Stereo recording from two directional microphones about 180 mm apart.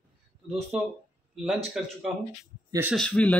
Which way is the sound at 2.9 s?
5° left (ahead or behind).